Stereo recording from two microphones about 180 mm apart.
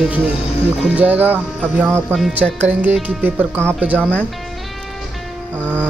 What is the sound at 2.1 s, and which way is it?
Speech, centre (ahead or behind).